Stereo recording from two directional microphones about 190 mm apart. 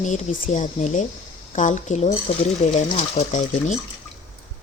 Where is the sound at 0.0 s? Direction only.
40° left (ahead or behind).